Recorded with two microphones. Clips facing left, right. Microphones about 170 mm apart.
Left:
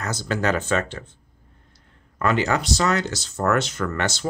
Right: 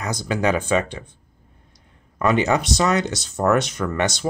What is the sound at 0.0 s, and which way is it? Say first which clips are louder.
Speech: right 2 dB; 15° right (ahead or behind).